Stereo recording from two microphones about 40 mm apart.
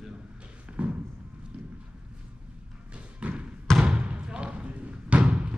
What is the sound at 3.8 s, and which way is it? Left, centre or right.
Thump, right.